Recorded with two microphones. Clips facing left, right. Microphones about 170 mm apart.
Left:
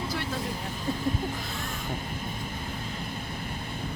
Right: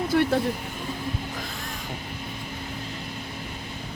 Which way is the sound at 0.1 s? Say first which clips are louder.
Right 11 dB; 60° right (ahead or behind).